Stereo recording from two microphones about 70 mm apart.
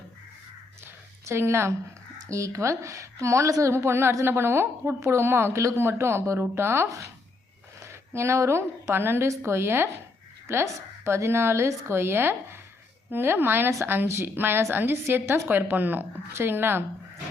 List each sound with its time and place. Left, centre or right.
1.2 s a woman's voice: right